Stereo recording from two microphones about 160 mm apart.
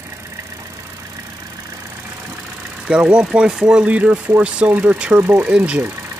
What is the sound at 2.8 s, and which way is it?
Speech, 5° right (ahead or behind).